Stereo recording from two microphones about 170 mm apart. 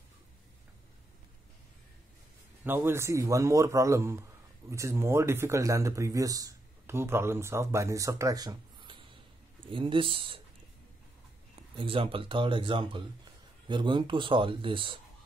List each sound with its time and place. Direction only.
2.6 s speech: 15° right (ahead or behind); by 10.4 s 30° right (ahead or behind)
11.7 s speech: 30° right (ahead or behind)